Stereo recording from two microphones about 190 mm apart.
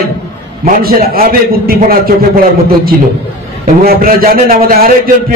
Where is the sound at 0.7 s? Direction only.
50° right (ahead or behind).